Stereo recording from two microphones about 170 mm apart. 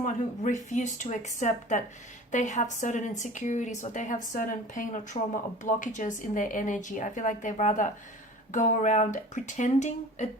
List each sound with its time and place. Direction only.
0.0 s a woman's voice: 45° left (ahead or behind)